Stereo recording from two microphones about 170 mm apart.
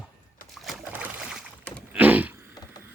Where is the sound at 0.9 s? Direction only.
5° right (ahead or behind).